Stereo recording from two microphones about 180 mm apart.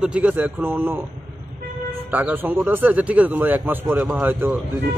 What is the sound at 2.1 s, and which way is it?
Speech, 10° right (ahead or behind).